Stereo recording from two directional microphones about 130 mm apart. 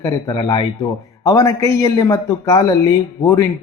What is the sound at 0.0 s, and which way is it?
Speech, 30° left (ahead or behind).